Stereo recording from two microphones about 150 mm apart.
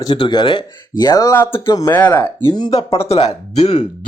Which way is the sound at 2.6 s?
40° left (ahead or behind).